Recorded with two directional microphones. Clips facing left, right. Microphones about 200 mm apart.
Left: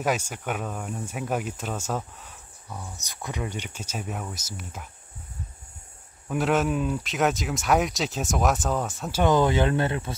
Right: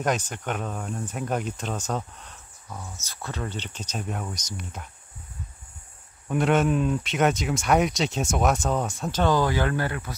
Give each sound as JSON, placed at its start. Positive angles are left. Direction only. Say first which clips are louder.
{"t": 0.0, "sound": "speech", "louder": "even", "side_deg": 5}
{"t": 3.0, "sound": "speech", "louder": "left 1 dB", "side_deg": 15}
{"t": 6.2, "sound": "speech", "louder": "right 2 dB", "side_deg": 0}
{"t": 9.2, "sound": "speech", "louder": "left 2 dB", "side_deg": 20}